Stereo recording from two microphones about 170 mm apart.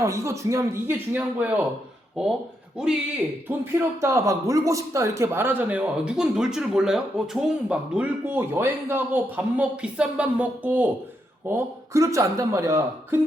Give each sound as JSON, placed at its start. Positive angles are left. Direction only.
{"t": 0.0, "sound": "a man's voice", "side_deg": -15}
{"t": 3.6, "sound": "a man's voice", "side_deg": -15}